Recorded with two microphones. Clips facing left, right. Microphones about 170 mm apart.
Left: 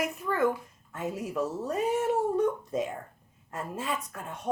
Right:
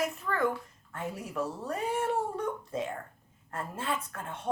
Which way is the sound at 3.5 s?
15° left (ahead or behind).